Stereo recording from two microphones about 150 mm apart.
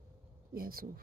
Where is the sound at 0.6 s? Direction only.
80° right.